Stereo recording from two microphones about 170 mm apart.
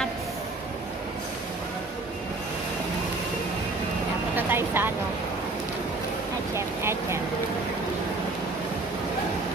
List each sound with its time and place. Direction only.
4.4 s vehicle: 10° right (ahead or behind)
6.5 s vehicle: 15° right (ahead or behind)